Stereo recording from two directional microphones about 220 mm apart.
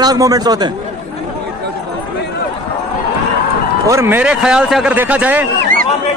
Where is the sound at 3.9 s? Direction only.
10° right (ahead or behind).